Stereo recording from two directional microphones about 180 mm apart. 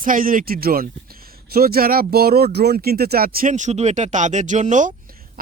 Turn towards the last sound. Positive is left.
turn(degrees=-45)  # may be behind; listen again after turning